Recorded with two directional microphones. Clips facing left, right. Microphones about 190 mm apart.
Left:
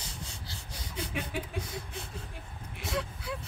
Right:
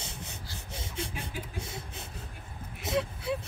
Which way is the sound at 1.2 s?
25° right (ahead or behind).